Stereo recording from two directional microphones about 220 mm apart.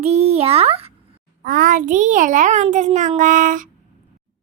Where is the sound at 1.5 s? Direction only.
40° right (ahead or behind).